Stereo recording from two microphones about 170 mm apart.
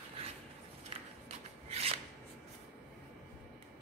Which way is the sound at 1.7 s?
35° right (ahead or behind).